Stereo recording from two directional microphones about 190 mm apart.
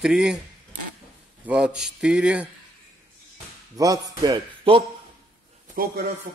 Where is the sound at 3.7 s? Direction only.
20° right (ahead or behind).